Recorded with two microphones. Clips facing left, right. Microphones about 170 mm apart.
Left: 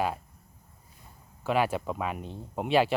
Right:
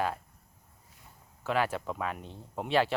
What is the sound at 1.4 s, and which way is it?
Speech, 15° left (ahead or behind).